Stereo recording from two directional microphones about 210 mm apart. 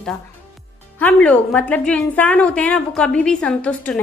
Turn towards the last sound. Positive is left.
turn(degrees=5)  # may be behind; listen again after turning